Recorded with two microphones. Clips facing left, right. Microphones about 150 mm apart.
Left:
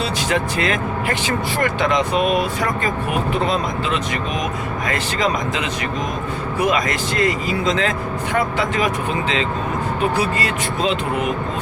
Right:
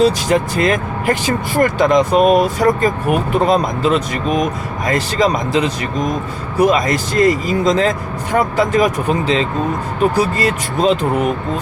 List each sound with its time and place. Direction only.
0.0 s speech: 40° right (ahead or behind)